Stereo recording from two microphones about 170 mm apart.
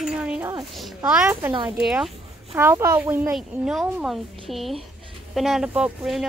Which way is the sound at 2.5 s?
15° right (ahead or behind).